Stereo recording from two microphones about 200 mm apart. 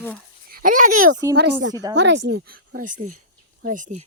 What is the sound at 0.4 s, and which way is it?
Speech, 45° right (ahead or behind).